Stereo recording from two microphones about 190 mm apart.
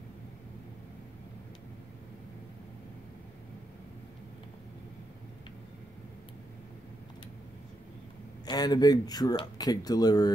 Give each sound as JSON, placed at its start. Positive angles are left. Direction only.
{"t": 8.5, "sound": "speech", "side_deg": 20}